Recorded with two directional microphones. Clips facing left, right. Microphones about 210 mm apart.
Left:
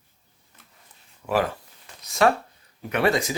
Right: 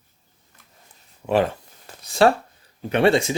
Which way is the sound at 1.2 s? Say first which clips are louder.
Right 4 dB; 25° right (ahead or behind).